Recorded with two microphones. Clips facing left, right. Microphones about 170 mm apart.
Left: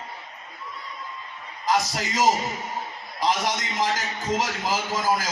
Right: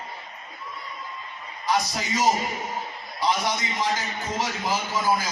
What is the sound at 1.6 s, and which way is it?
A man's voice, 90° left.